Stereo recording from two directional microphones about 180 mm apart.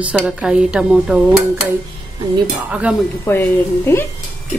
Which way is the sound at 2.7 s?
5° right (ahead or behind).